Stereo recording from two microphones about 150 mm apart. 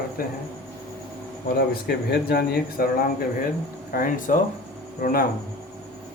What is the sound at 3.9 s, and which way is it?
Speech, 65° left (ahead or behind).